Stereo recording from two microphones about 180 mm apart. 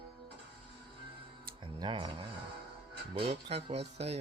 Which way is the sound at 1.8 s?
25° right (ahead or behind).